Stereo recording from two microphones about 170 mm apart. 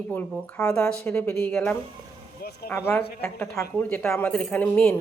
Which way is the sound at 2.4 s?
65° left (ahead or behind).